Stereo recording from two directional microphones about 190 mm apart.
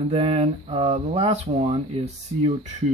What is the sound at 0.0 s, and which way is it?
Speech, 30° right (ahead or behind).